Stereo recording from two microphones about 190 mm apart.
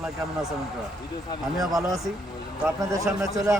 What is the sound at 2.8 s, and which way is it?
Speech, 15° right (ahead or behind).